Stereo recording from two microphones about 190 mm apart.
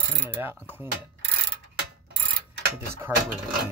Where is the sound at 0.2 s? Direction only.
10° right (ahead or behind).